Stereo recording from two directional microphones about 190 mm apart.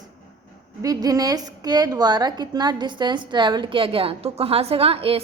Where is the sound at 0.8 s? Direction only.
20° right (ahead or behind).